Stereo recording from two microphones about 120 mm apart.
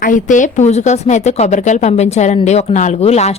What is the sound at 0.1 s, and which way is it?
A woman's voice, 90° left.